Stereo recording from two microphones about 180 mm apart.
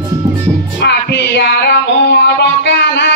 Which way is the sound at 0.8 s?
65° left (ahead or behind).